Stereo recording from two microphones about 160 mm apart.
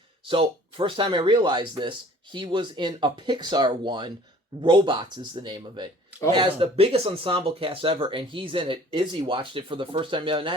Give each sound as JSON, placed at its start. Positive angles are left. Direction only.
{"t": 0.3, "sound": "speech", "side_deg": -35}